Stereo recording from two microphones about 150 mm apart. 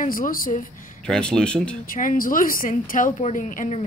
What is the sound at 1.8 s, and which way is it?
A woman's voice, 65° left (ahead or behind).